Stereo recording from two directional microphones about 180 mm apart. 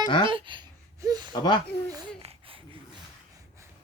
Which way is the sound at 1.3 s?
25° left (ahead or behind).